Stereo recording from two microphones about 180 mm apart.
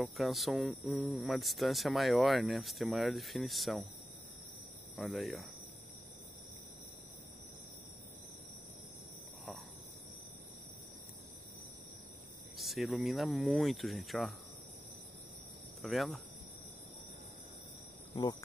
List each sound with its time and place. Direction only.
0.0 s speech: centre (ahead or behind)
4.9 s speech: centre (ahead or behind)
12.5 s speech: centre (ahead or behind)
15.8 s speech: centre (ahead or behind)
18.1 s speech: 25° left (ahead or behind)